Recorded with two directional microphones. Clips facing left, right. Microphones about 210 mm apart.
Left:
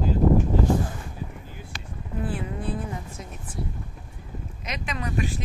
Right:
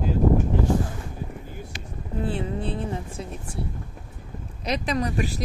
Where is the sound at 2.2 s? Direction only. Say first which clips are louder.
Right 3 dB; 25° right (ahead or behind).